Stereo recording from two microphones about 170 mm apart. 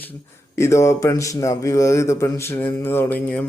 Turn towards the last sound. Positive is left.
turn(degrees=10)  # may be behind; listen again after turning